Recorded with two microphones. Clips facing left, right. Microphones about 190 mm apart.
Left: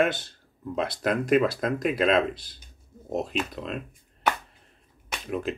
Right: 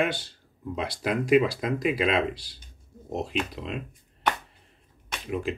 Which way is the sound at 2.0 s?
50° left (ahead or behind).